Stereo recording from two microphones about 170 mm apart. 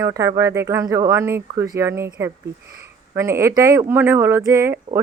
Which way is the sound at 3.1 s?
15° right (ahead or behind).